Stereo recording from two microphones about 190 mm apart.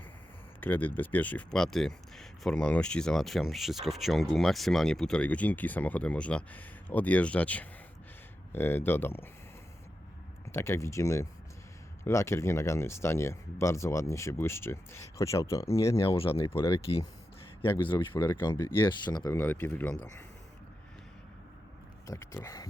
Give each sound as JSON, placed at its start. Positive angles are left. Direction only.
{"t": 0.6, "sound": "speech", "side_deg": 10}
{"t": 10.5, "sound": "speech", "side_deg": 15}
{"t": 16.0, "sound": "speech", "side_deg": 30}
{"t": 16.5, "sound": "speech", "side_deg": 15}
{"t": 22.0, "sound": "speech", "side_deg": 15}